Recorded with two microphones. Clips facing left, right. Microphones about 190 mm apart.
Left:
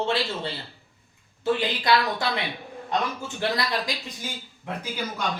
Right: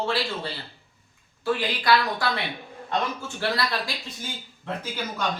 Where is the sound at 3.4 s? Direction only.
20° left (ahead or behind).